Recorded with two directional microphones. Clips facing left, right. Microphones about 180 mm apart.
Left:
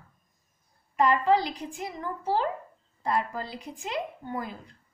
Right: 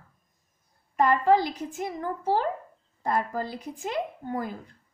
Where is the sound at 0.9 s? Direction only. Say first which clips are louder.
Right 2 dB; 45° right (ahead or behind).